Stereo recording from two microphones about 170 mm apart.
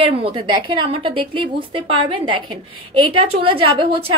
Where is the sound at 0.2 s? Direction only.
30° right (ahead or behind).